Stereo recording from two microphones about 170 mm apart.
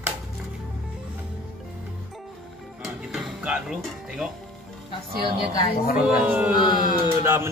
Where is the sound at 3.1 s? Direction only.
5° right (ahead or behind).